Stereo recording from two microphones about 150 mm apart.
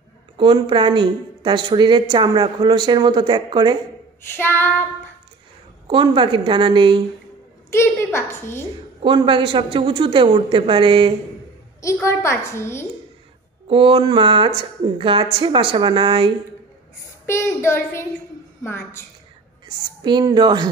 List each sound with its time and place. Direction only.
0.4 s a woman's voice: 35° right (ahead or behind)
4.3 s a woman's voice: 15° left (ahead or behind)
5.9 s a woman's voice: 30° right (ahead or behind)
7.7 s a woman's voice: 15° left (ahead or behind)
9.0 s a woman's voice: 35° right (ahead or behind)
11.8 s a child's voice: 20° left (ahead or behind)
13.7 s a woman's voice: 35° right (ahead or behind)
17.3 s a woman's voice: 15° left (ahead or behind)
20.0 s a woman's voice: 30° right (ahead or behind)